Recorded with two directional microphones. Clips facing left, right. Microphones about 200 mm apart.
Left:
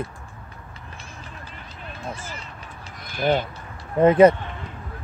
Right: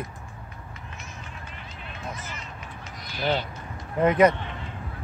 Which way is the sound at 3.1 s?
50° left (ahead or behind).